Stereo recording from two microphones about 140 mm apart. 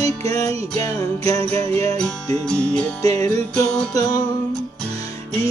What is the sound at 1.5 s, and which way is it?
Music, 50° right (ahead or behind).